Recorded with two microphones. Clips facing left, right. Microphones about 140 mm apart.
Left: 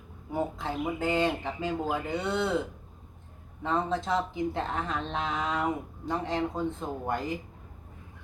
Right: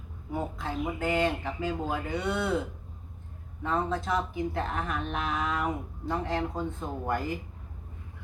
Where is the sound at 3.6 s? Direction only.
25° left (ahead or behind).